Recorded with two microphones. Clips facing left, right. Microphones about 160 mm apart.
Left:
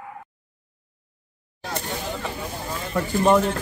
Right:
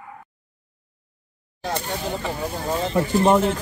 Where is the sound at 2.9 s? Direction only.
25° right (ahead or behind).